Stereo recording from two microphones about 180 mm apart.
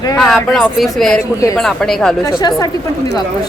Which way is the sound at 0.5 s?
Centre (ahead or behind).